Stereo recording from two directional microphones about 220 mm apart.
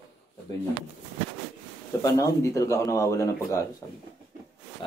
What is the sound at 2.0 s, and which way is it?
Speech, 15° left (ahead or behind).